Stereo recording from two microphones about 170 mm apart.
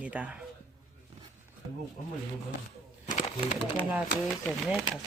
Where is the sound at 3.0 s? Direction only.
50° left (ahead or behind).